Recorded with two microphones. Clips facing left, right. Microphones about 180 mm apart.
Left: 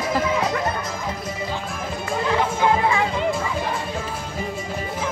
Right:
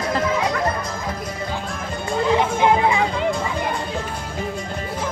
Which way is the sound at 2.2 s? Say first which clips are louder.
Right 3 dB; 20° right (ahead or behind).